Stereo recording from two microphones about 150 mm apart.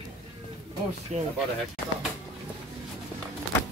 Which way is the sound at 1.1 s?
50° right (ahead or behind).